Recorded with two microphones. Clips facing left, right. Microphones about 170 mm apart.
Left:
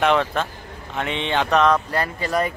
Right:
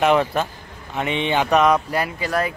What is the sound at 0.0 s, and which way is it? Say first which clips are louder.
Speech: right 2 dB; 10° right (ahead or behind).